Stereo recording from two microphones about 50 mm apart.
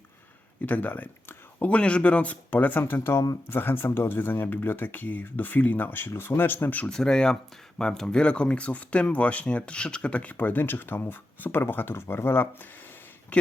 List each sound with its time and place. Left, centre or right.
0.6 s speech: left
1.7 s speech: left
3.5 s speech: left
6.8 s speech: centre; by 13.0 s left
13.3 s speech: left